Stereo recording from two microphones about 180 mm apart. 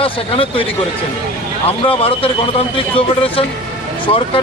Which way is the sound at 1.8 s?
30° left (ahead or behind).